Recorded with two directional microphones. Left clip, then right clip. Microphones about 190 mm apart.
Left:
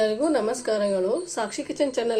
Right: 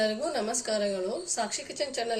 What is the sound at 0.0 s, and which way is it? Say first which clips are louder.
A woman's voice: left 6 dB; 35° left (ahead or behind).